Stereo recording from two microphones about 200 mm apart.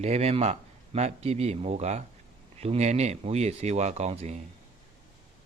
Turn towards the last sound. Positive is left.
turn(degrees=-35)  # may be behind; listen again after turning